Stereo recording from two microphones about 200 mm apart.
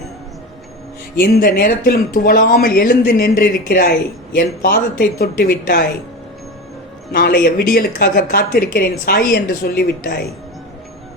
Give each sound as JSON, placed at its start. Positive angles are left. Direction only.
{"t": 1.1, "sound": "speech", "side_deg": 50}
{"t": 7.1, "sound": "speech", "side_deg": 50}